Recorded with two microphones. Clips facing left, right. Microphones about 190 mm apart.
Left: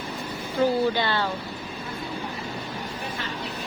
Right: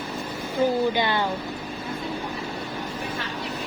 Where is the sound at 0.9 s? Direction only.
15° right (ahead or behind).